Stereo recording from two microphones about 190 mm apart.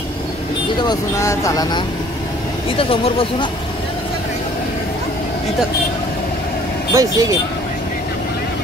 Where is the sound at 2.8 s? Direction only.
30° left (ahead or behind).